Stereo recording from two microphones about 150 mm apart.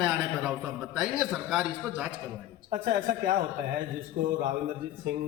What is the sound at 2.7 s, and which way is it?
A man's voice, 65° right (ahead or behind).